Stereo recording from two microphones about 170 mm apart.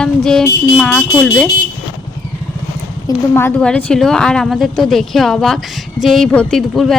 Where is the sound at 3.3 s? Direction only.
10° left (ahead or behind).